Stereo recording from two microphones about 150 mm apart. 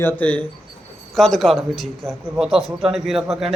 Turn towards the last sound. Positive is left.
turn(degrees=0)  # may be behind; listen again after turning